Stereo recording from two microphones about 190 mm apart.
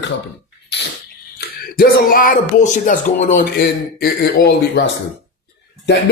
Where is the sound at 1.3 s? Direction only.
50° left (ahead or behind).